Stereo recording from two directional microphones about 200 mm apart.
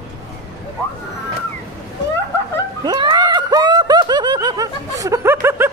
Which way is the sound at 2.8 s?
20° right (ahead or behind).